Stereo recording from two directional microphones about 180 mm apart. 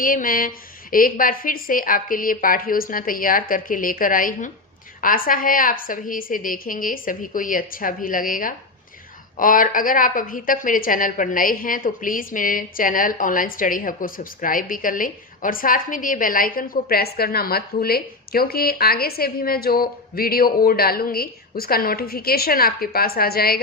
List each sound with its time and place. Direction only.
0.0 s a woman's voice: 50° left (ahead or behind)